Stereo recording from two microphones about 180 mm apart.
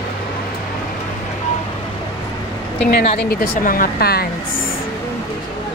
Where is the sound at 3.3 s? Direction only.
55° left (ahead or behind).